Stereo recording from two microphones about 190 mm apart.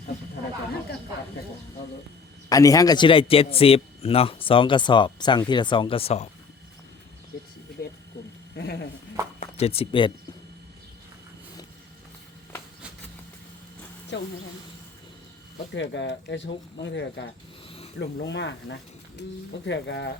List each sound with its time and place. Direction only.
2.5 s a man's voice: 20° left (ahead or behind)
8.5 s speech: 60° left (ahead or behind)
9.4 s speech: 30° left (ahead or behind)
14.1 s speech: 70° left (ahead or behind)
15.7 s speech: 70° left (ahead or behind)
17.7 s a sound: 30° left (ahead or behind)
18.0 s speech: 65° left (ahead or behind)